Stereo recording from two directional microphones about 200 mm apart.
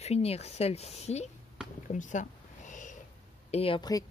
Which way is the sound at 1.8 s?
40° left (ahead or behind).